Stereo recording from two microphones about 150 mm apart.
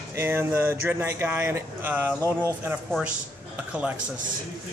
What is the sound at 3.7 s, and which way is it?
Speech, 10° right (ahead or behind).